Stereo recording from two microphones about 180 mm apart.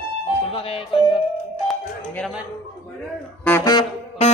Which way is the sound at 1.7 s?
5° left (ahead or behind).